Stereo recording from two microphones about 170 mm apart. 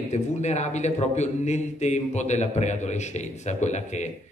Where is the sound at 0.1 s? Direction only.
40° left (ahead or behind).